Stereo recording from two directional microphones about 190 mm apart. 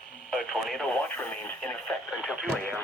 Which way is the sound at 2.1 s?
5° right (ahead or behind).